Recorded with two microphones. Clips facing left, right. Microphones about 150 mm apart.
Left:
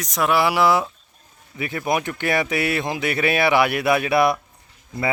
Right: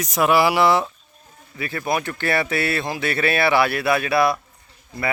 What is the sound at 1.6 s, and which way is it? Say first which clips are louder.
Speech: left 1 dB; 20° left (ahead or behind).